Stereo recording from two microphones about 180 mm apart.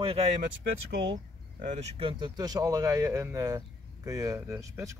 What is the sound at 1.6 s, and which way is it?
Speech, 35° right (ahead or behind).